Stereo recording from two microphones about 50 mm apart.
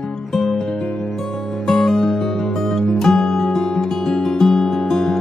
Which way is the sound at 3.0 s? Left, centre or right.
Centre.